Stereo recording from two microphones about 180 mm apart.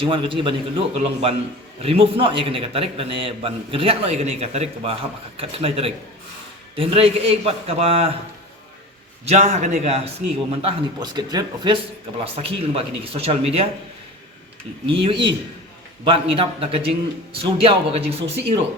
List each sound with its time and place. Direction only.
0.0 s a man's voice: 30° right (ahead or behind)
9.2 s a man's voice: 35° right (ahead or behind)
14.8 s a man's voice: 30° right (ahead or behind)